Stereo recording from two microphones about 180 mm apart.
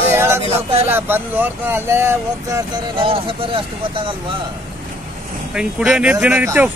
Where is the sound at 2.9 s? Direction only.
30° right (ahead or behind).